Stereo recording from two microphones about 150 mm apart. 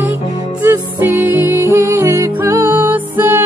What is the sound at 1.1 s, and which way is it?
Music, 15° right (ahead or behind).